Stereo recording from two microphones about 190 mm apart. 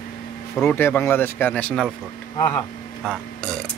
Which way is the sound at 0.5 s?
10° left (ahead or behind).